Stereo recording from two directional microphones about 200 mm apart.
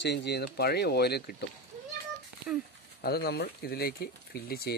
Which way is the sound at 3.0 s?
50° left (ahead or behind).